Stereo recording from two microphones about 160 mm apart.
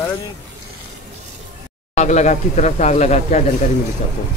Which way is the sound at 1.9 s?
45° left (ahead or behind).